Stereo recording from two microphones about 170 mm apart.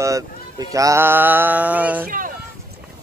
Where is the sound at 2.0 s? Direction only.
55° right (ahead or behind).